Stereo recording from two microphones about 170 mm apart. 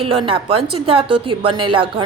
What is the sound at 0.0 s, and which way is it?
A woman's voice, 30° right (ahead or behind).